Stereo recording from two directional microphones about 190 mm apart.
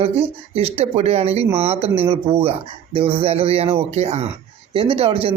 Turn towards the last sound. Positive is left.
turn(degrees=-30)  # may be behind; listen again after turning